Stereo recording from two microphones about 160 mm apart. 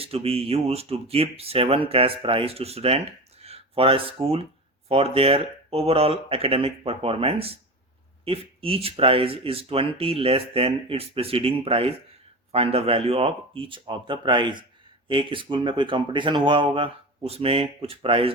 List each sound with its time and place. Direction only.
0.0 s speech: 35° right (ahead or behind)